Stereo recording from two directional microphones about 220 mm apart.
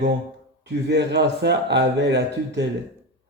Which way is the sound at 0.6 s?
50° right (ahead or behind).